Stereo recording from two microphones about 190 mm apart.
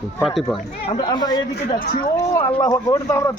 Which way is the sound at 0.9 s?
25° left (ahead or behind).